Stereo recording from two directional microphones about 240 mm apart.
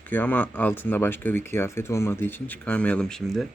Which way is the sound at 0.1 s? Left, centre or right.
Centre.